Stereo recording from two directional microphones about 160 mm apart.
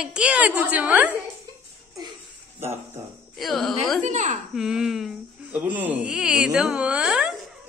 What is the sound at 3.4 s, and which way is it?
Speech, centre (ahead or behind).